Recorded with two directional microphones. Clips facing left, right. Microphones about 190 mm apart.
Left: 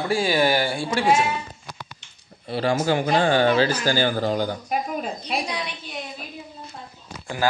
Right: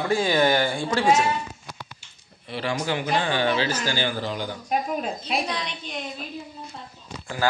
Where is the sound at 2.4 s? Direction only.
40° left (ahead or behind).